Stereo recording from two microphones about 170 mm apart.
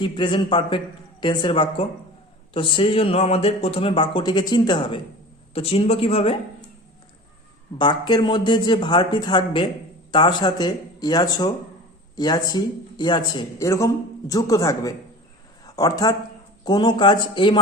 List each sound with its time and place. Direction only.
0.0 s speech: 30° left (ahead or behind)
7.8 s speech: 25° left (ahead or behind)